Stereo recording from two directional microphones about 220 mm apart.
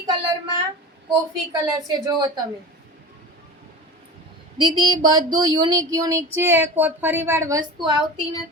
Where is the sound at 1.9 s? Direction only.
20° right (ahead or behind).